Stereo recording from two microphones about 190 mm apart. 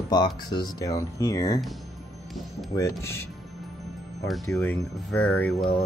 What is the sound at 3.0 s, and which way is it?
Speech, 15° left (ahead or behind).